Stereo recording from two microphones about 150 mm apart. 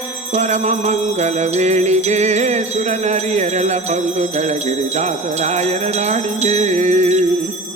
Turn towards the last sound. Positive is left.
turn(degrees=-50)  # may be behind; listen again after turning